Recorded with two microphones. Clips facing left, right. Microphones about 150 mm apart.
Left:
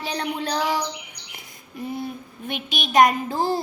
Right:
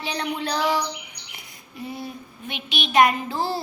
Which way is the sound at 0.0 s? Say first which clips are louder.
Left 1 dB; 40° left (ahead or behind).